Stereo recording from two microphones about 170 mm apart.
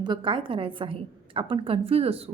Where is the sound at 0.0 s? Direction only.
30° right (ahead or behind).